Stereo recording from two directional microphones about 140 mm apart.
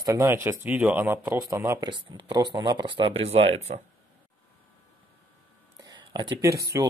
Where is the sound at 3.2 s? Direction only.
45° right (ahead or behind).